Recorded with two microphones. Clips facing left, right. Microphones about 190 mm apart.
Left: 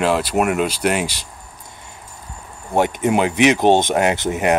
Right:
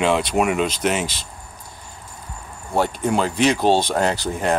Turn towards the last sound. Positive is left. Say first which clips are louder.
# left 3 dB
turn(degrees=20)  # may be behind; listen again after turning